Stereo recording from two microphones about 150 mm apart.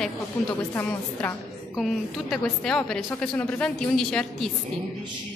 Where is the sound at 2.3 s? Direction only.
Centre (ahead or behind).